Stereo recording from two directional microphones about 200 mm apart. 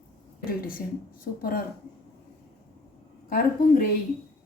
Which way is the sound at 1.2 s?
45° left (ahead or behind).